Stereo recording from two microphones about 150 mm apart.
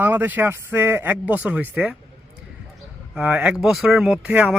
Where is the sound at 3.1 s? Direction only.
10° right (ahead or behind).